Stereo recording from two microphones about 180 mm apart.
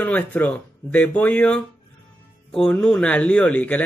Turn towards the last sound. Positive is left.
turn(degrees=10)  # may be behind; listen again after turning